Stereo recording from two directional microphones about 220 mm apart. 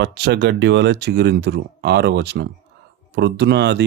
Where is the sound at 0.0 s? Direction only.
50° right (ahead or behind).